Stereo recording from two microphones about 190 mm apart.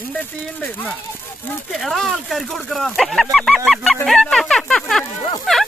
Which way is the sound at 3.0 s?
Centre (ahead or behind).